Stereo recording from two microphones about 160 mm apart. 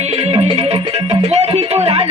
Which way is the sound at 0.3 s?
40° right (ahead or behind).